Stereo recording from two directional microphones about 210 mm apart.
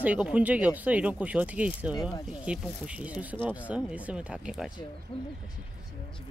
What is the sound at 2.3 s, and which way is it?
Speech, 5° right (ahead or behind).